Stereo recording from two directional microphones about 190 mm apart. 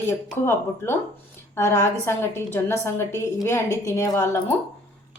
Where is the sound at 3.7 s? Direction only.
15° right (ahead or behind).